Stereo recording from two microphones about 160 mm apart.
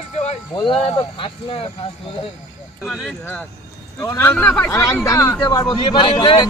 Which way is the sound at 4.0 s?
15° left (ahead or behind).